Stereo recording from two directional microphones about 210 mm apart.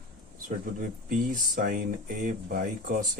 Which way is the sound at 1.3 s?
40° right (ahead or behind).